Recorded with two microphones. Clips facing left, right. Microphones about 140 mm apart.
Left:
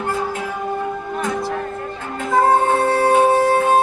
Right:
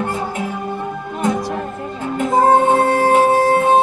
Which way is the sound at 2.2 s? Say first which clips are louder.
Right 2 dB; 20° right (ahead or behind).